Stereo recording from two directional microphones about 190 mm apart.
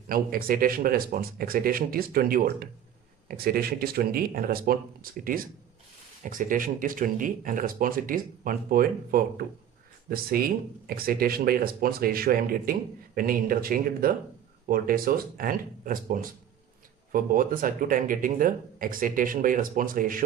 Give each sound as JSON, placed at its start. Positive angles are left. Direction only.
{"t": 0.1, "sound": "speech", "side_deg": -50}